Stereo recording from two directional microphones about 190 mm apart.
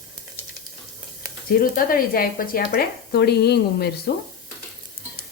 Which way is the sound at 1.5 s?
50° left (ahead or behind).